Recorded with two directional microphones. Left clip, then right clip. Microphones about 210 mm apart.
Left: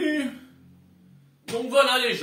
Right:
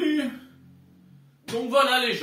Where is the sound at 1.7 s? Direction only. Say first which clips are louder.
Left 1 dB; 20° left (ahead or behind).